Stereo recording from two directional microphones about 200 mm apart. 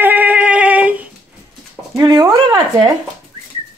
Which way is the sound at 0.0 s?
10° right (ahead or behind).